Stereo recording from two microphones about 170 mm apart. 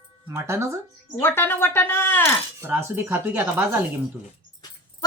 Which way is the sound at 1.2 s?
15° left (ahead or behind).